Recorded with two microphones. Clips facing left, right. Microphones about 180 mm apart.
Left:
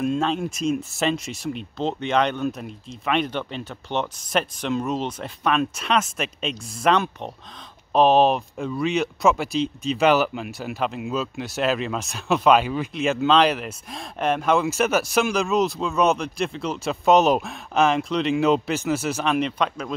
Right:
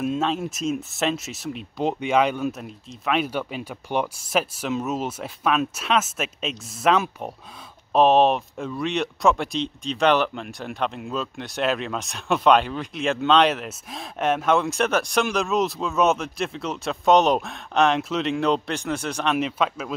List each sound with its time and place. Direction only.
0.0 s speech: 5° right (ahead or behind)